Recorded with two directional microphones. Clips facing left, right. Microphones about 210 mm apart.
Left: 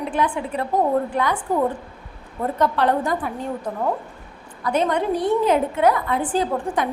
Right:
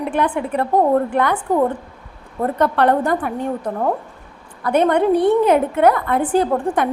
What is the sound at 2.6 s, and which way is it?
Speech, 60° right (ahead or behind).